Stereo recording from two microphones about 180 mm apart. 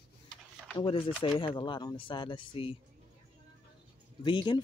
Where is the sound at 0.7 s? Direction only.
30° left (ahead or behind).